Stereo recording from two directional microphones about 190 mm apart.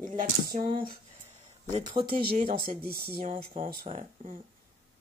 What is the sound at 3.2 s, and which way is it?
Speech, 45° right (ahead or behind).